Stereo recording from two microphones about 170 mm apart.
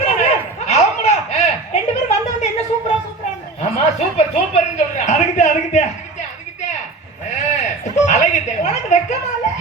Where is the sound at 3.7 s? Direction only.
40° left (ahead or behind).